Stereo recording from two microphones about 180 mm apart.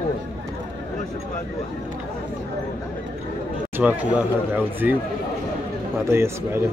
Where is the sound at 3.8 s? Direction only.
10° right (ahead or behind).